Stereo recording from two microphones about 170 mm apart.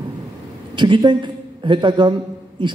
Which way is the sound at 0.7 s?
25° right (ahead or behind).